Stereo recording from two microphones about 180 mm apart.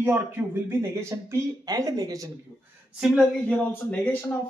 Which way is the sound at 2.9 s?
Centre (ahead or behind).